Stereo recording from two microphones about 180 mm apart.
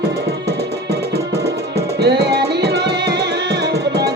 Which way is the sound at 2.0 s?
65° right (ahead or behind).